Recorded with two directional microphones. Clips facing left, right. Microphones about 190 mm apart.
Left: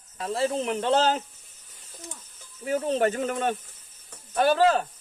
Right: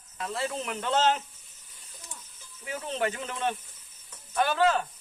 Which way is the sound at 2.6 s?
40° left (ahead or behind).